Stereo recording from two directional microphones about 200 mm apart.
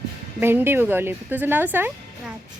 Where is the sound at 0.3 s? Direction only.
10° right (ahead or behind).